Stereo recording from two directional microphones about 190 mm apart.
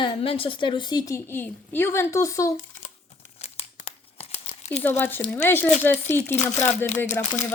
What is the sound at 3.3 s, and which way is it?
Crumpling, 35° left (ahead or behind).